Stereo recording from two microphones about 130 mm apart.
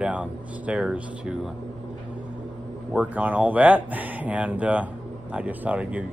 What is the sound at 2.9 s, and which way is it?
Speech, 10° right (ahead or behind).